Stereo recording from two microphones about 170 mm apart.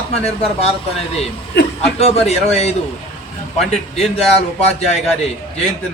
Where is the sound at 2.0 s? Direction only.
35° left (ahead or behind).